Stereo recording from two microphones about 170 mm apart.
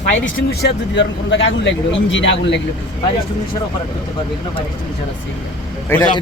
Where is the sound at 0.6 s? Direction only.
90° left.